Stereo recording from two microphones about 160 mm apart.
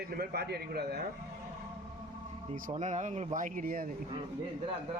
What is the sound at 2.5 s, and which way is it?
Speech, 50° right (ahead or behind).